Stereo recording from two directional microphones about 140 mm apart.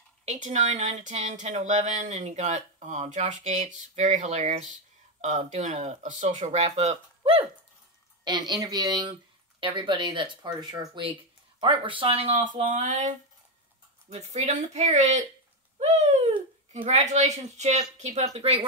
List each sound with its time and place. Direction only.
0.2 s speech: 55° right (ahead or behind)
8.2 s speech: 30° right (ahead or behind)
12.5 s speech: 60° right (ahead or behind)
15.8 s bird: 55° right (ahead or behind)
16.7 s speech: 50° right (ahead or behind)